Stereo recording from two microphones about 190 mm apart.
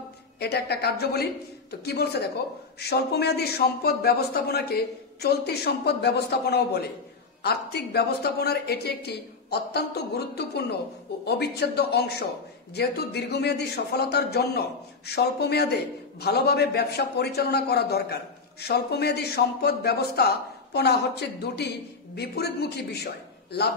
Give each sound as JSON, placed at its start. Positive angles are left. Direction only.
{"t": 0.4, "sound": "speech", "side_deg": 60}